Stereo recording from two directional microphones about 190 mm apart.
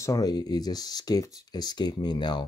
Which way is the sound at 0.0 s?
20° left (ahead or behind).